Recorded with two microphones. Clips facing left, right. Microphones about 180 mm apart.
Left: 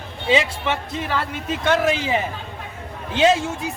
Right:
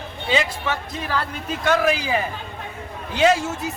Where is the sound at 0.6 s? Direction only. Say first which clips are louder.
Left 2 dB; 25° left (ahead or behind).